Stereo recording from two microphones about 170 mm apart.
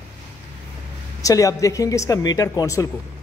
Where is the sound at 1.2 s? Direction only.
20° left (ahead or behind).